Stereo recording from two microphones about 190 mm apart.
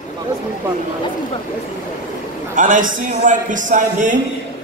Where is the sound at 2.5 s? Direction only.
45° right (ahead or behind).